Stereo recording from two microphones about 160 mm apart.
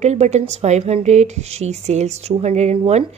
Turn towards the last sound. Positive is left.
turn(degrees=-45)  # may be behind; listen again after turning